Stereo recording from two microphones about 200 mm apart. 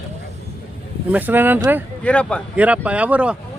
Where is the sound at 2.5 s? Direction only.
5° right (ahead or behind).